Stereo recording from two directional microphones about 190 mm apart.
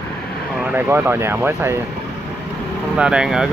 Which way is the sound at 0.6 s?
10° right (ahead or behind).